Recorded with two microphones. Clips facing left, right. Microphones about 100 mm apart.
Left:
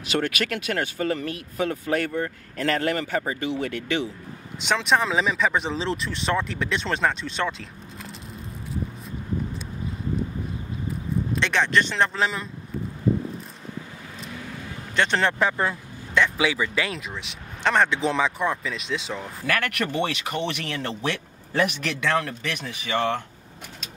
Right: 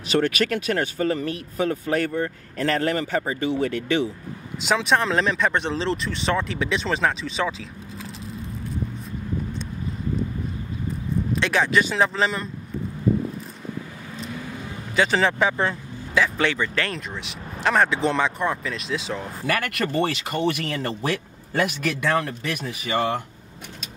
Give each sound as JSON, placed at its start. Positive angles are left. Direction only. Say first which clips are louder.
{"t": 0.1, "sound": "speech", "louder": "right 4 dB", "side_deg": -30}
{"t": 4.6, "sound": "speech", "louder": "right 1 dB", "side_deg": 0}
{"t": 11.3, "sound": "speech", "louder": "right 1 dB", "side_deg": -5}
{"t": 15.0, "sound": "speech", "louder": "right 2 dB", "side_deg": 0}